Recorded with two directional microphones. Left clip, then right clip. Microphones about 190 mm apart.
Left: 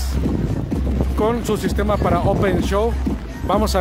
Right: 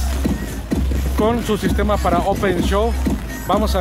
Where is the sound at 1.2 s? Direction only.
5° left (ahead or behind).